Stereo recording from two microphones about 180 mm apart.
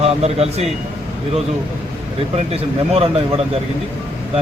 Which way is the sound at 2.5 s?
35° right (ahead or behind).